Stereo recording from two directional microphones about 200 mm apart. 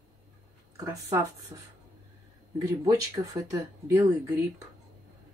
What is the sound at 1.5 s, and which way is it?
Speech, 15° right (ahead or behind).